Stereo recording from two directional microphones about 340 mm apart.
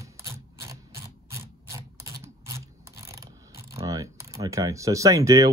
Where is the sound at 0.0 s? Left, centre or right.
Centre.